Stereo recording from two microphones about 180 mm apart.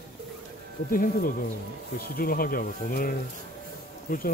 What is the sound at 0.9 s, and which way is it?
Speech, 50° left (ahead or behind).